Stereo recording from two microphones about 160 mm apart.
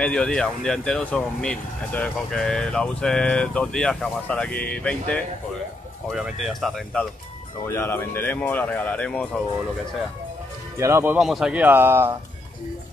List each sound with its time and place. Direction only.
0.0 s speech: 5° left (ahead or behind)
6.0 s speech: 5° right (ahead or behind)
7.6 s speech: 15° left (ahead or behind)
10.8 s speech: 15° right (ahead or behind)
11.1 s speech: 5° right (ahead or behind)